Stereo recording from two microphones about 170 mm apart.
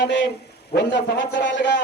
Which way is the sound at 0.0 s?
90° left.